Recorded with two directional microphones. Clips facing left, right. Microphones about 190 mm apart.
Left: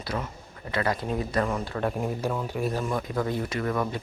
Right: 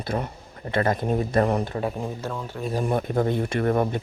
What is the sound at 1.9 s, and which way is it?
Speech, 10° left (ahead or behind).